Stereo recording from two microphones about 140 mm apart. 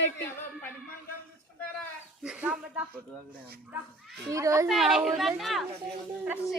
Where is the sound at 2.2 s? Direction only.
5° right (ahead or behind).